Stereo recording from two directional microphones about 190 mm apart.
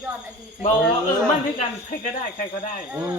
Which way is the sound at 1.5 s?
40° left (ahead or behind).